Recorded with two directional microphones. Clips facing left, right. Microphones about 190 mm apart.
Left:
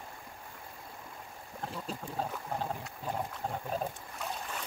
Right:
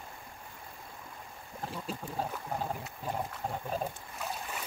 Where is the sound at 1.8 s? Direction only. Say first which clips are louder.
Right 1 dB; 5° right (ahead or behind).